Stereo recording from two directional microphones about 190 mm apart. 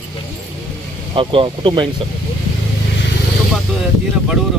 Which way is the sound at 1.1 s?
25° right (ahead or behind).